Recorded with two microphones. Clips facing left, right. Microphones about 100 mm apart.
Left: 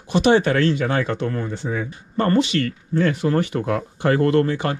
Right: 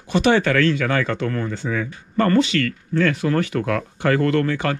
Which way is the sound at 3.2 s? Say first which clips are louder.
Even; 20° left (ahead or behind).